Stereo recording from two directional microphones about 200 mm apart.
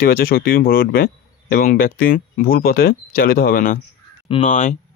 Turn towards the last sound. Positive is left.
turn(degrees=40)  # may be behind; listen again after turning